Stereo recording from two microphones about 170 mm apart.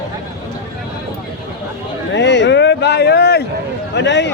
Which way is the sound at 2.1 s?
90° left.